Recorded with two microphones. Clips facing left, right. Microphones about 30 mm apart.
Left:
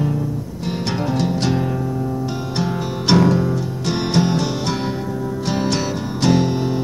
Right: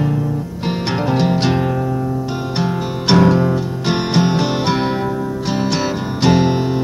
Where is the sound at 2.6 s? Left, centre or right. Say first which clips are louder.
Right 1 dB; centre.